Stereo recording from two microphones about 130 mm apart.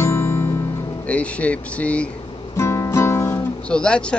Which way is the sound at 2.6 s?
20° left (ahead or behind).